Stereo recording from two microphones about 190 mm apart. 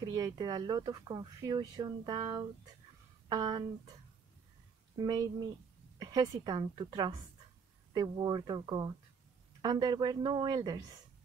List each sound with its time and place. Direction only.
0.0 s speech: 20° right (ahead or behind)
5.0 s speech: 20° right (ahead or behind)